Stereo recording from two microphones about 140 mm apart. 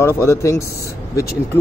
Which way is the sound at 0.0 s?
20° left (ahead or behind).